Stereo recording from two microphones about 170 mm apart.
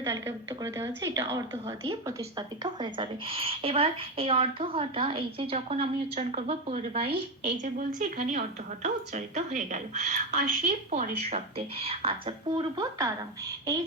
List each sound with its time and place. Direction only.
0.0 s a woman's voice: 15° right (ahead or behind); by 7.5 s 35° right (ahead or behind)
7.6 s a woman's voice: 50° right (ahead or behind); by 13.1 s 20° right (ahead or behind)